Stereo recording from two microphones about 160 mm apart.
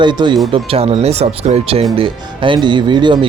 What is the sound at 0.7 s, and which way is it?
Speech, 40° right (ahead or behind).